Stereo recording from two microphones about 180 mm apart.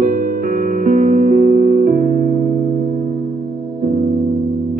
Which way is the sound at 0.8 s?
40° right (ahead or behind).